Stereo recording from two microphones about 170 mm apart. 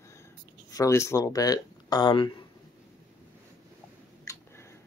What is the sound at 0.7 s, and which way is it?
Speech, 20° left (ahead or behind).